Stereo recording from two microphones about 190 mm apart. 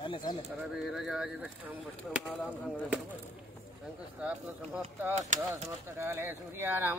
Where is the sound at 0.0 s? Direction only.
25° left (ahead or behind).